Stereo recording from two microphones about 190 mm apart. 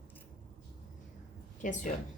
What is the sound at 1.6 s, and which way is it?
Speech, 40° left (ahead or behind).